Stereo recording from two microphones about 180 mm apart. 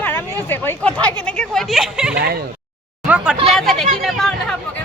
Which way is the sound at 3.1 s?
10° right (ahead or behind).